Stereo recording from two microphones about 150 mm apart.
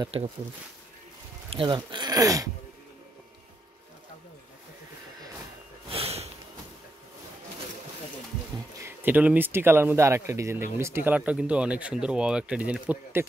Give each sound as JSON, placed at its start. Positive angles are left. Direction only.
{"t": 0.1, "sound": "speech", "side_deg": -40}
{"t": 1.5, "sound": "speech", "side_deg": -35}
{"t": 5.9, "sound": "a sound", "side_deg": -40}
{"t": 8.7, "sound": "speech", "side_deg": -15}